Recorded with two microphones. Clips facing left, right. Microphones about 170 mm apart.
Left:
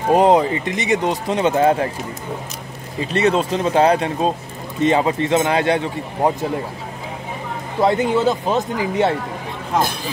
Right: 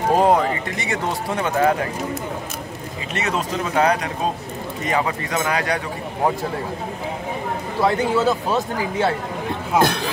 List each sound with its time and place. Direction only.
0.1 s speech: 20° left (ahead or behind)
3.1 s speech: 30° left (ahead or behind)
7.8 s speech: 20° left (ahead or behind)